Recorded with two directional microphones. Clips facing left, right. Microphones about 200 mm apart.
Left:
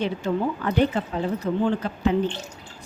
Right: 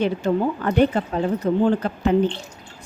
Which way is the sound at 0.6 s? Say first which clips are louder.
Right 4 dB; 45° right (ahead or behind).